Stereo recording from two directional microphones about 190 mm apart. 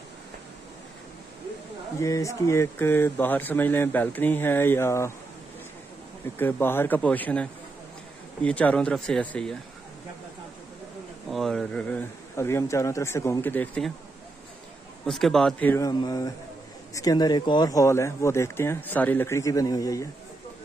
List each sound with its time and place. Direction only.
2.0 s speech: 15° left (ahead or behind)
6.3 s speech: 10° left (ahead or behind)
11.2 s speech: centre (ahead or behind)
15.0 s speech: centre (ahead or behind)
15.7 s speech: 20° left (ahead or behind)